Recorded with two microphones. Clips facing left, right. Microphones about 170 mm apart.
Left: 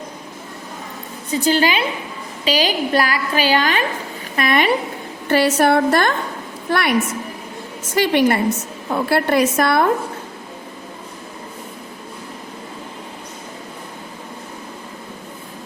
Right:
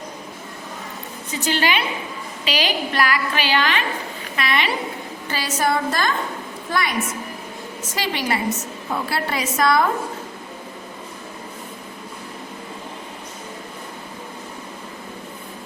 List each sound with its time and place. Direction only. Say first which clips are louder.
1.3 s a woman's voice: left 5 dB; 35° left (ahead or behind)
5.3 s a woman's voice: left 8 dB; 60° left (ahead or behind)
7.9 s a woman's voice: left 9 dB; 60° left (ahead or behind)